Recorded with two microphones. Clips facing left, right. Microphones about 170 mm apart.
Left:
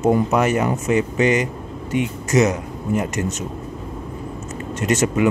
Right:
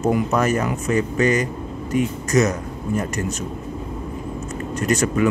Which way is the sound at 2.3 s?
20° left (ahead or behind).